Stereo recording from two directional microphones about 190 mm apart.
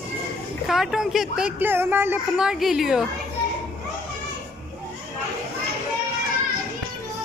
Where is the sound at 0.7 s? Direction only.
5° right (ahead or behind).